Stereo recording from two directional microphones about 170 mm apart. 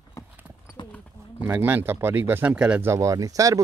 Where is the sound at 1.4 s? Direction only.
10° right (ahead or behind).